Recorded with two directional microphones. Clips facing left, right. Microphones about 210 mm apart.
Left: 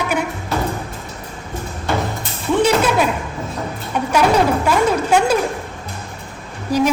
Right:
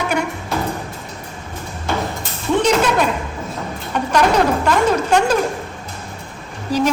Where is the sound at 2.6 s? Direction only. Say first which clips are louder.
Left 1 dB; 5° left (ahead or behind).